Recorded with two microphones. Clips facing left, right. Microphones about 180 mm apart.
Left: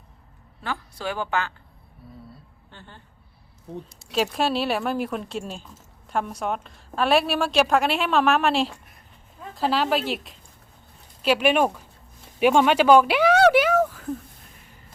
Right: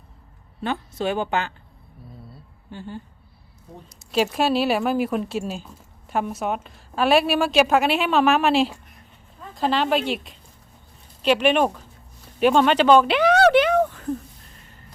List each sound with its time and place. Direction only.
0.6 s speech: 20° right (ahead or behind)
2.6 s a woman's voice: 10° right (ahead or behind)
4.1 s a woman's voice: centre (ahead or behind)